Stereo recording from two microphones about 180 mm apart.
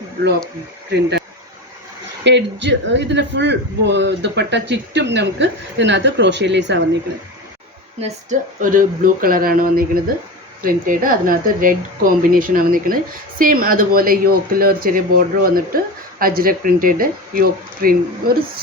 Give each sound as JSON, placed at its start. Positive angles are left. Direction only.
{"t": 2.2, "sound": "speech", "side_deg": -80}
{"t": 8.0, "sound": "speech", "side_deg": -45}